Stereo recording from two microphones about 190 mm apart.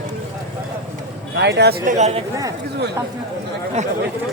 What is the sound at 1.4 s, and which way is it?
Speech, 60° right (ahead or behind).